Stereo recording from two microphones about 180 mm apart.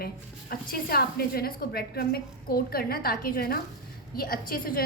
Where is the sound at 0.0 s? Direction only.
55° left (ahead or behind).